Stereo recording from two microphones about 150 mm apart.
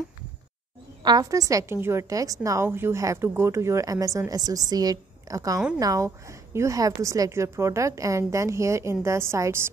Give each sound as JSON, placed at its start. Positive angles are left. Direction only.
{"t": 1.0, "sound": "a woman's voice", "side_deg": -25}